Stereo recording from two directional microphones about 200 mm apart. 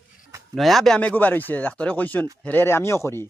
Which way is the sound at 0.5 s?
Centre (ahead or behind).